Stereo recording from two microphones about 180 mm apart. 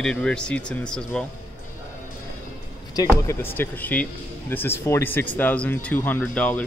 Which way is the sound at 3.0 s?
15° left (ahead or behind).